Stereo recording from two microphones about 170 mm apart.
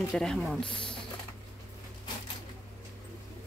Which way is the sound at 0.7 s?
30° left (ahead or behind).